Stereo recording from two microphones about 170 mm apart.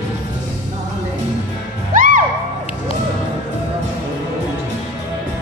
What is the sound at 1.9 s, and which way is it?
Music, 50° right (ahead or behind).